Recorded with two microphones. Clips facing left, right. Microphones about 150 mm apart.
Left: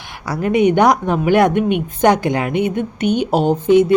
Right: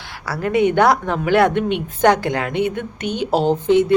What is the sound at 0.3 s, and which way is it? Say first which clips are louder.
A woman's voice: left 3 dB; 20° left (ahead or behind).